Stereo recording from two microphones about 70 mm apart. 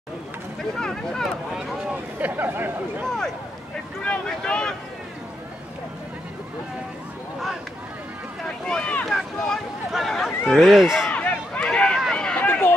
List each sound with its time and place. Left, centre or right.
0.7 s speech: centre
1.5 s speech: centre
2.1 s speech: right
4.0 s speech: centre
8.6 s speech: centre
10.6 s speech: centre
11.1 s a sound: centre
12.1 s run: centre
12.4 s run: left